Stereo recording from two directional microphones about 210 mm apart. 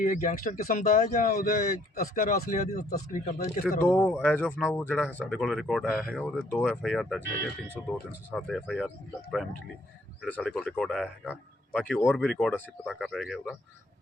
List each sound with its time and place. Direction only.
0.0 s speech: 35° left (ahead or behind)
3.8 s speech: 10° left (ahead or behind)
10.2 s speech: 5° left (ahead or behind)